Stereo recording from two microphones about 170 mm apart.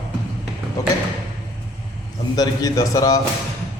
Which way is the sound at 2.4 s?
20° left (ahead or behind).